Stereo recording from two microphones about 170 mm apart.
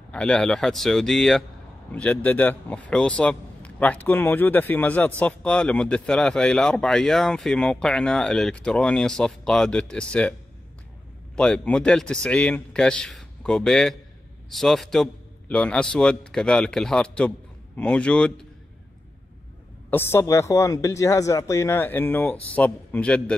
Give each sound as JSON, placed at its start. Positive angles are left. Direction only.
{"t": 0.1, "sound": "speech", "side_deg": 5}
{"t": 11.3, "sound": "speech", "side_deg": 5}
{"t": 19.9, "sound": "speech", "side_deg": 15}